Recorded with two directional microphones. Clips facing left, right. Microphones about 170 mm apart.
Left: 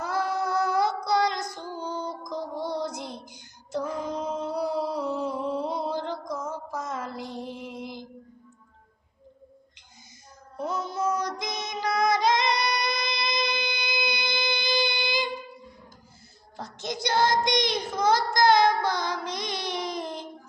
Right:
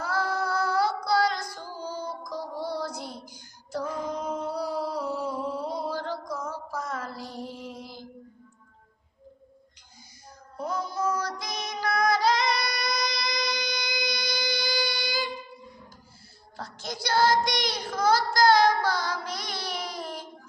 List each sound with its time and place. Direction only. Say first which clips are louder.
0.0 s female singing: left 1 dB; 20° left (ahead or behind)
1.8 s child singing: left 1 dB; 20° left (ahead or behind)
4.3 s a sound: left 2 dB; 25° left (ahead or behind)
10.6 s child singing: left 1 dB; 25° left (ahead or behind)
16.6 s child singing: left 3 dB; 20° left (ahead or behind)